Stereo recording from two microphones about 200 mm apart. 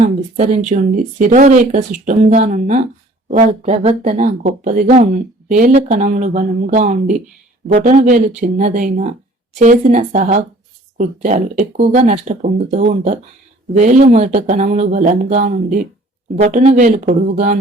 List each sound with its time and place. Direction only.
0.0 s speech: 40° right (ahead or behind)